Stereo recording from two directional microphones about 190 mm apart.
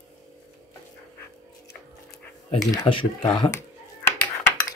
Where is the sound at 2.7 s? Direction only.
25° left (ahead or behind).